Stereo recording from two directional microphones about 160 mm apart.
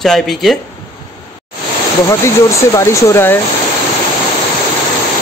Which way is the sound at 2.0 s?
20° left (ahead or behind).